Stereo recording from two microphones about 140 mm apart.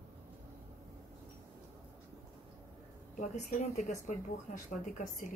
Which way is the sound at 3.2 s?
60° left (ahead or behind).